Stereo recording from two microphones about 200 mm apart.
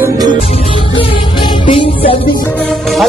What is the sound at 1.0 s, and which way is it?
Music, 25° left (ahead or behind).